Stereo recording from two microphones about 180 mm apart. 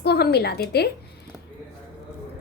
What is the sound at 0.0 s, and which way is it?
Speech, 65° left (ahead or behind).